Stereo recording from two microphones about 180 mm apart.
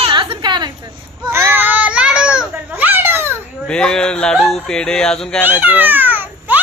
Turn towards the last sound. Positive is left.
turn(degrees=-10)  # may be behind; listen again after turning